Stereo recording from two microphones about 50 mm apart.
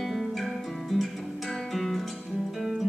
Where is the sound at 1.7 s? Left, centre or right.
Centre.